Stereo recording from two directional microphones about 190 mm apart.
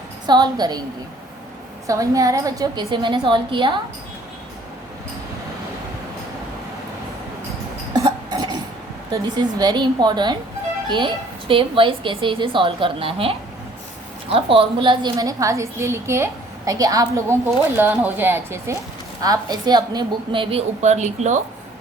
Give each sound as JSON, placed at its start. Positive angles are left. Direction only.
{"t": 0.3, "sound": "speech", "side_deg": -20}
{"t": 1.9, "sound": "speech", "side_deg": -20}
{"t": 7.9, "sound": "cough", "side_deg": -20}
{"t": 9.1, "sound": "a woman's voice", "side_deg": -20}